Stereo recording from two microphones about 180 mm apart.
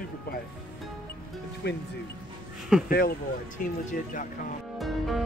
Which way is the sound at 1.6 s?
65° left (ahead or behind).